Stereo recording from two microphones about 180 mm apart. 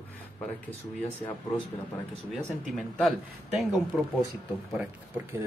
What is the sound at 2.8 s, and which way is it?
Speech, centre (ahead or behind).